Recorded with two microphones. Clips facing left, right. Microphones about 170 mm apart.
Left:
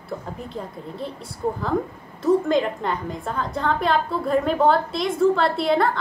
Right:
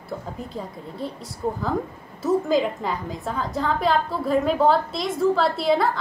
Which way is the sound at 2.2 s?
5° right (ahead or behind).